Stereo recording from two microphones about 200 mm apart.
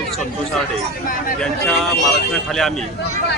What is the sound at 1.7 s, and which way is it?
Speech, centre (ahead or behind).